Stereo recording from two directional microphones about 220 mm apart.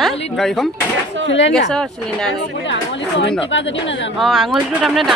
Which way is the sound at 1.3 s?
55° left (ahead or behind).